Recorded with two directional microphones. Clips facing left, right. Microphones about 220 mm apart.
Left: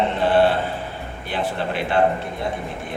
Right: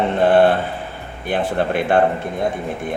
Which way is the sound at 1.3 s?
50° right (ahead or behind).